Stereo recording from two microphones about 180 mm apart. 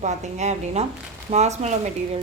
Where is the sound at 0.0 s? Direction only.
40° right (ahead or behind).